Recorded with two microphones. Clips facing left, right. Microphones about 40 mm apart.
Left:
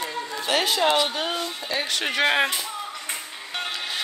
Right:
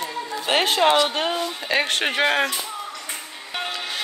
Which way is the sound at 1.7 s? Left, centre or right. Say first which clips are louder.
Right 7 dB; right.